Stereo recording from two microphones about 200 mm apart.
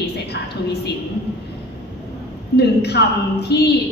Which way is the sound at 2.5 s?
55° left (ahead or behind).